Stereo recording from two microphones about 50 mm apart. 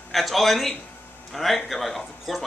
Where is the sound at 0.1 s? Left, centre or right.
Centre.